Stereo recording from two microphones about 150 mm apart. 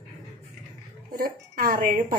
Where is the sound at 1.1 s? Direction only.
70° right (ahead or behind).